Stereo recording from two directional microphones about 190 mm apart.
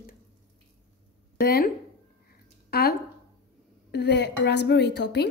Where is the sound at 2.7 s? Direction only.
55° left (ahead or behind).